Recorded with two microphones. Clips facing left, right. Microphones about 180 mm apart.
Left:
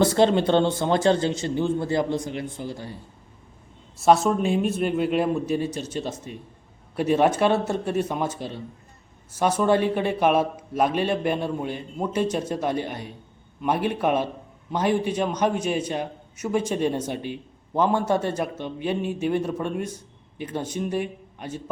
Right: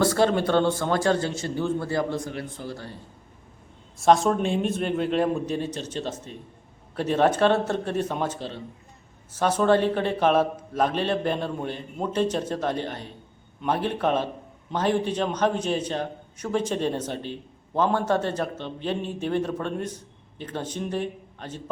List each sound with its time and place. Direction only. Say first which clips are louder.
0.0 s a man's voice: left 2 dB; 20° left (ahead or behind)
4.0 s a man's voice: left 1 dB; 5° left (ahead or behind)